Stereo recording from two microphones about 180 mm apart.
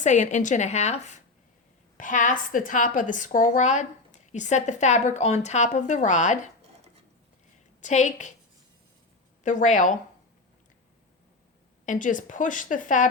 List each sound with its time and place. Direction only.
0.0 s a woman's voice: 40° left (ahead or behind)
7.8 s a woman's voice: 40° left (ahead or behind)
9.4 s a woman's voice: 40° left (ahead or behind)
11.9 s a woman's voice: 45° left (ahead or behind)